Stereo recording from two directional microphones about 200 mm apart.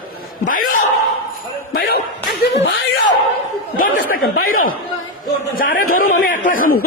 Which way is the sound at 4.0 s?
50° left (ahead or behind).